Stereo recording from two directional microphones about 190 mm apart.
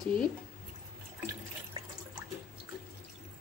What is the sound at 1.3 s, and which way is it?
Water, 20° right (ahead or behind).